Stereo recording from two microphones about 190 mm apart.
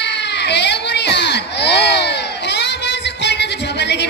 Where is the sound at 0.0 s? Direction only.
65° left (ahead or behind).